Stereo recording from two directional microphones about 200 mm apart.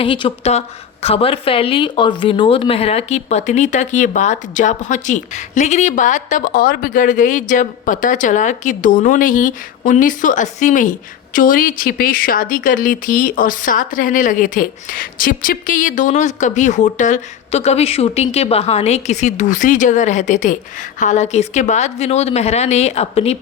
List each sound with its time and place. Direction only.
0.0 s a woman's voice: 25° left (ahead or behind)